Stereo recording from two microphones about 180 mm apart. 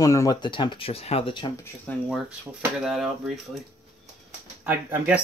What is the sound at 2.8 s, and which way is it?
Speech, 5° right (ahead or behind).